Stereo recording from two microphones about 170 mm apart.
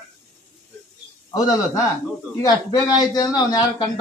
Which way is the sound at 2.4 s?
25° left (ahead or behind).